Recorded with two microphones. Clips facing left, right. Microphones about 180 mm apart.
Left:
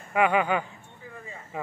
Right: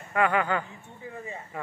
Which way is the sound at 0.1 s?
15° left (ahead or behind).